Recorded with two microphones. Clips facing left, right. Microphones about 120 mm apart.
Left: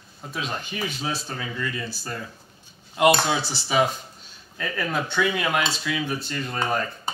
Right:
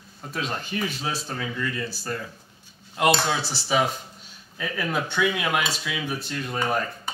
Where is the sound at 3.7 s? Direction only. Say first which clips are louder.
Left 1 dB; centre (ahead or behind).